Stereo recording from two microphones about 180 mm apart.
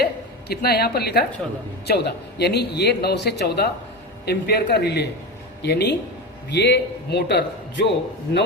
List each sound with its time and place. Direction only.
0.0 s a woman's voice: 60° left (ahead or behind)